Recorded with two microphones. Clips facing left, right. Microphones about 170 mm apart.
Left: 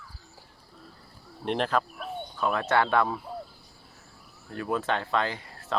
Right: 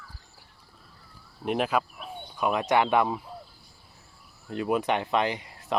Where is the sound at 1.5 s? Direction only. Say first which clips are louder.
Right 1 dB; 10° right (ahead or behind).